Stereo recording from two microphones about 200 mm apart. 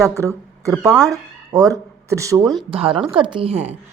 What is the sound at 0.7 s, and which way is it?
Speech, 5° right (ahead or behind).